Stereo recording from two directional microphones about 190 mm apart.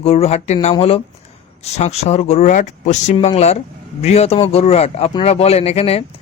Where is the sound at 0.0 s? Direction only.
30° left (ahead or behind).